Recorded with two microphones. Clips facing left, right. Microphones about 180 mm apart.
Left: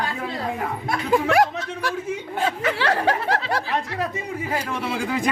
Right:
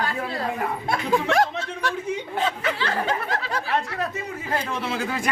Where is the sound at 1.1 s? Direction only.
10° left (ahead or behind).